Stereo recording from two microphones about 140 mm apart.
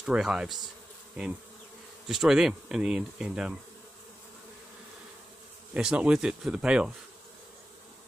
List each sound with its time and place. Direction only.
0.0 s speech: 5° right (ahead or behind)
2.0 s speech: 5° right (ahead or behind)
5.8 s speech: 5° right (ahead or behind)